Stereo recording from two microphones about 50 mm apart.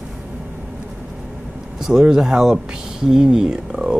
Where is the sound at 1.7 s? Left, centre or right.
Centre.